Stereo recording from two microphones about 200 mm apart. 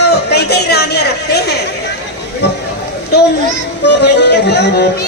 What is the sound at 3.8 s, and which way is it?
A man's voice, 60° left (ahead or behind).